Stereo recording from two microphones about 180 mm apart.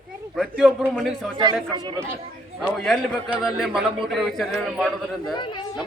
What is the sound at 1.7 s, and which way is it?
Speech, 20° right (ahead or behind).